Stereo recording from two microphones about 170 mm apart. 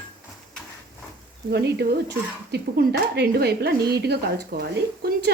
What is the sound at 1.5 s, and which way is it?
Speech, 75° right (ahead or behind).